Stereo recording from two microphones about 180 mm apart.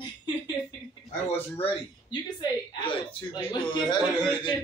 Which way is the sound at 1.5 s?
30° left (ahead or behind).